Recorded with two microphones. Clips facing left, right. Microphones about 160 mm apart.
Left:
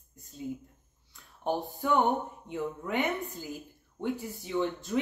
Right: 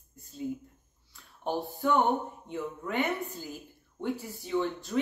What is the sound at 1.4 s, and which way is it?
Speech, 20° left (ahead or behind).